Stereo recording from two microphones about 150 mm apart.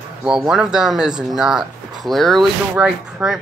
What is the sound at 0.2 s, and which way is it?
Speech, 5° right (ahead or behind).